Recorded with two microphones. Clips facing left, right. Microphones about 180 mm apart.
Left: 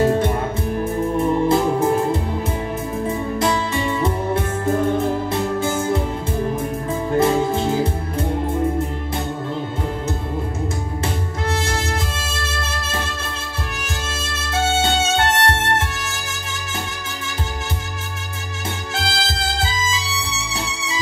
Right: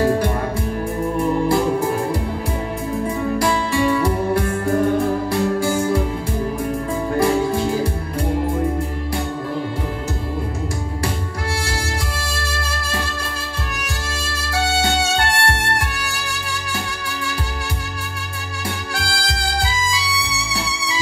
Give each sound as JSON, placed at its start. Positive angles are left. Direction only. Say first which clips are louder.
{"t": 1.1, "sound": "music", "louder": "even", "side_deg": 20}
{"t": 3.1, "sound": "music", "louder": "right 1 dB", "side_deg": 20}
{"t": 7.2, "sound": "music", "louder": "left 1 dB", "side_deg": 20}
{"t": 14.5, "sound": "music", "louder": "left 1 dB", "side_deg": 20}
{"t": 18.9, "sound": "music", "louder": "left 1 dB", "side_deg": 20}